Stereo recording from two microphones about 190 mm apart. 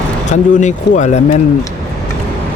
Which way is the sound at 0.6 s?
40° left (ahead or behind).